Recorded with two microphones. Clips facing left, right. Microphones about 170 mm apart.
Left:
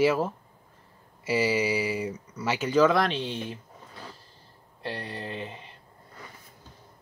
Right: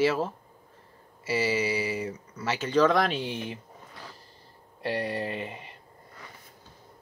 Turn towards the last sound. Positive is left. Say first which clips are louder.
# right 1 dB
turn(degrees=-10)  # may be behind; listen again after turning